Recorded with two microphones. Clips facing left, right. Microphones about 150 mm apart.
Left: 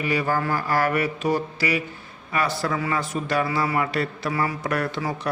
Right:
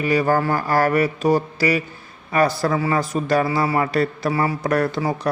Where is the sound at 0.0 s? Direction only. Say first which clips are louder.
Right 5 dB; 40° right (ahead or behind).